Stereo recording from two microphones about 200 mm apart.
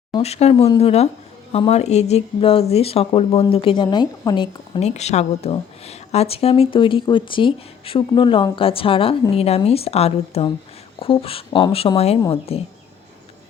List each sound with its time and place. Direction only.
0.1 s speech: 30° left (ahead or behind)